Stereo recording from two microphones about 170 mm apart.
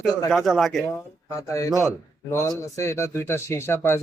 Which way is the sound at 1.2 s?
15° left (ahead or behind).